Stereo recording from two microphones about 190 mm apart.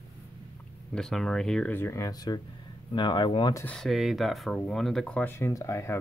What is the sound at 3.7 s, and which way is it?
Speech, centre (ahead or behind).